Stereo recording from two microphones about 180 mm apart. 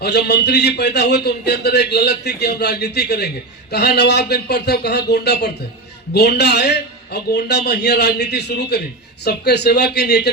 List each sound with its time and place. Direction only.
0.0 s a man's voice: 65° left (ahead or behind)